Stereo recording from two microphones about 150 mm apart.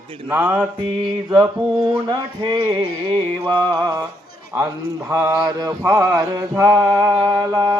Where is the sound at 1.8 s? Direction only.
30° right (ahead or behind).